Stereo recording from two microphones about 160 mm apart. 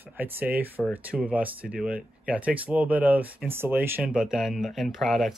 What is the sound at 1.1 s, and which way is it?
Speech, 10° right (ahead or behind).